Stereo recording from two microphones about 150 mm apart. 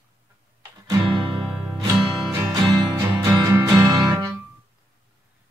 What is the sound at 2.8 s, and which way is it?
Music, 25° right (ahead or behind).